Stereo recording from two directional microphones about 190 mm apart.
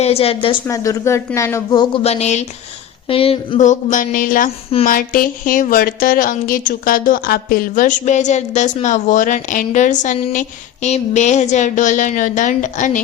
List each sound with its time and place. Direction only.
0.0 s a woman's voice: 30° left (ahead or behind)
0.7 s a woman's voice: 15° left (ahead or behind); by 13.0 s 40° left (ahead or behind)